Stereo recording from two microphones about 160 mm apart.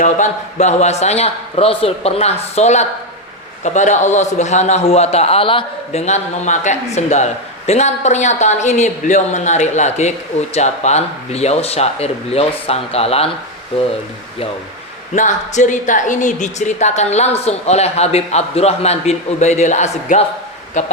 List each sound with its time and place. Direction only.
0.0 s speech: 50° left (ahead or behind)
15.1 s speech: 50° left (ahead or behind)